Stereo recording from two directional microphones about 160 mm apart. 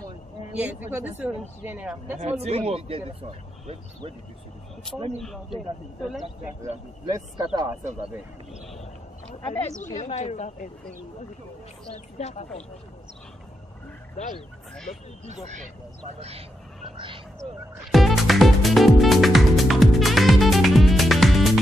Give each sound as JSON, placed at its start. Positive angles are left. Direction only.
{"t": 0.6, "sound": "a woman's voice", "side_deg": -10}
{"t": 2.1, "sound": "speech", "side_deg": -40}
{"t": 7.1, "sound": "a man's voice", "side_deg": -20}
{"t": 9.4, "sound": "speech", "side_deg": 35}
{"t": 11.9, "sound": "speech", "side_deg": 45}
{"t": 16.0, "sound": "speech", "side_deg": -40}
{"t": 17.9, "sound": "music", "side_deg": 0}